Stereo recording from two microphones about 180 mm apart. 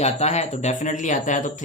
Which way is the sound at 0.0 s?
35° left (ahead or behind).